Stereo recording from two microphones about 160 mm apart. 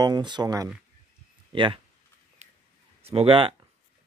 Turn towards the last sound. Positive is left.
turn(degrees=-35)  # may be behind; listen again after turning